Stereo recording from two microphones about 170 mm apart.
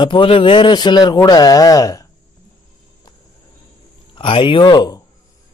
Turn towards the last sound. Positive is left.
turn(degrees=25)  # may be behind; listen again after turning